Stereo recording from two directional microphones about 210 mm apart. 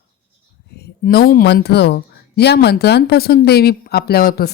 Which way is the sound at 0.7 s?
50° left (ahead or behind).